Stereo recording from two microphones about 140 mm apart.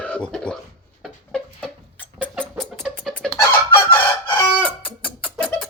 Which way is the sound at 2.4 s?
Centre (ahead or behind).